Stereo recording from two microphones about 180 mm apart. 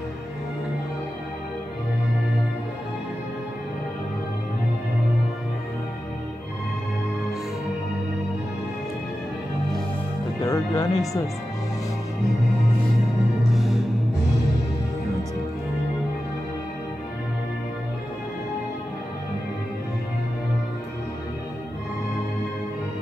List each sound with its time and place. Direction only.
10.4 s speech: 20° left (ahead or behind)
13.5 s music: centre (ahead or behind)